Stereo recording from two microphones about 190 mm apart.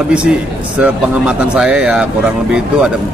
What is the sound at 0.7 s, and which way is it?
Speech, 5° right (ahead or behind).